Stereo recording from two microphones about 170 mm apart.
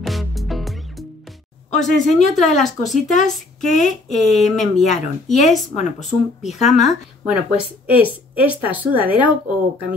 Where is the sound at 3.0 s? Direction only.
45° left (ahead or behind).